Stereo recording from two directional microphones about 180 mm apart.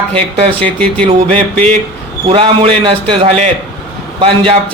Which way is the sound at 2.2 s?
30° right (ahead or behind).